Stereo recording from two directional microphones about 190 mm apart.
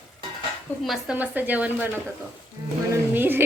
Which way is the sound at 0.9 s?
5° right (ahead or behind).